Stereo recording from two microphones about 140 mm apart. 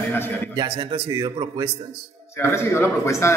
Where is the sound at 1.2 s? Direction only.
25° right (ahead or behind).